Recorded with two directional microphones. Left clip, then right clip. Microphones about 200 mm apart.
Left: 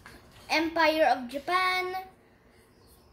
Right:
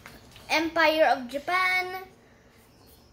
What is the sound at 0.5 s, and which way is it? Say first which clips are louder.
A woman's voice: right 2 dB; 5° right (ahead or behind).